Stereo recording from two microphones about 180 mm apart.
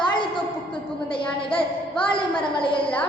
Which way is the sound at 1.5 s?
30° left (ahead or behind).